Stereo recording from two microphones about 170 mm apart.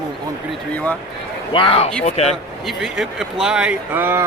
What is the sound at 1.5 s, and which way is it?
Speech, 30° left (ahead or behind).